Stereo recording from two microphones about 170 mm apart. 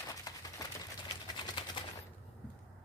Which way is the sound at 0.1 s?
20° left (ahead or behind).